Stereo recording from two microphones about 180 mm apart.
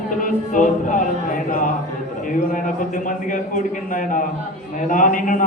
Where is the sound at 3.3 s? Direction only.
45° left (ahead or behind).